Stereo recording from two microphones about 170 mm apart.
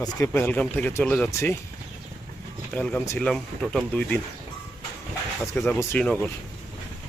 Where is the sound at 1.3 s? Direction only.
15° left (ahead or behind).